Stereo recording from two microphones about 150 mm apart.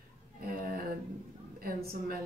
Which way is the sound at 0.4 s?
80° right.